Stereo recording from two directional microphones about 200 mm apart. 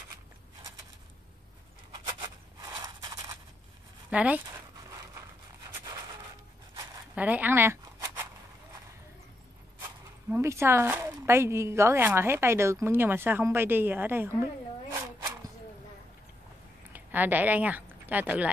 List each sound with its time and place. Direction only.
2.0 s a sound: 25° right (ahead or behind)
4.1 s speech: 5° right (ahead or behind)
4.8 s a sound: 15° right (ahead or behind)
7.2 s zipper: 10° right (ahead or behind)
10.3 s a woman's voice: 15° right (ahead or behind)
16.9 s speech: 10° right (ahead or behind)